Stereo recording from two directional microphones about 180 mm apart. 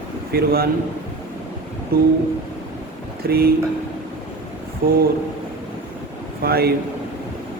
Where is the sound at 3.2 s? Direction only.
60° right (ahead or behind).